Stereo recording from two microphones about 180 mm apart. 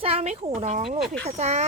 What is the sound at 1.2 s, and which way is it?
Speech, 40° right (ahead or behind).